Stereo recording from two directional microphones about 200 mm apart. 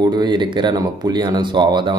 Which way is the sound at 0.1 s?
20° right (ahead or behind).